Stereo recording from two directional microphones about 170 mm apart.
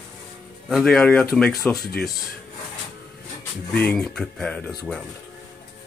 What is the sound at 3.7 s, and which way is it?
Speech, 5° left (ahead or behind).